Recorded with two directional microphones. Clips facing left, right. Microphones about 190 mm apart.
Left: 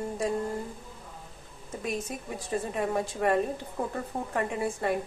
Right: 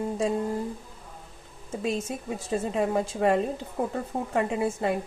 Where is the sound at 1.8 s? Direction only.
25° right (ahead or behind).